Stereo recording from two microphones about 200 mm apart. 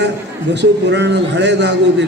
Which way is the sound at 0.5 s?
60° right (ahead or behind).